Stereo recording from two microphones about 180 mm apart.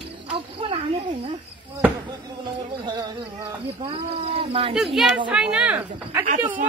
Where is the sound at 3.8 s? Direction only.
30° right (ahead or behind).